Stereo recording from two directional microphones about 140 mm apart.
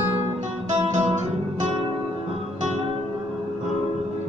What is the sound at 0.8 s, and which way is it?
Guitar, 55° right (ahead or behind).